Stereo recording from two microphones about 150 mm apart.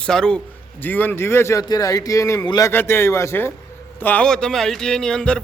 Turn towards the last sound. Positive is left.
turn(degrees=5)  # may be behind; listen again after turning